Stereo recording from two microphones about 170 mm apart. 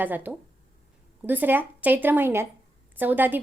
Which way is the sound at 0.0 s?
10° right (ahead or behind).